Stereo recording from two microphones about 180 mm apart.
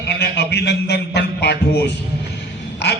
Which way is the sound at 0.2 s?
70° left (ahead or behind).